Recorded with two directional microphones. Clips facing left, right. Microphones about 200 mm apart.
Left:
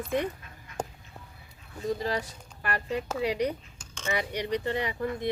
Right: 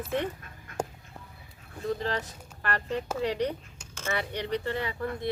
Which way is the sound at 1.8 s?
10° left (ahead or behind).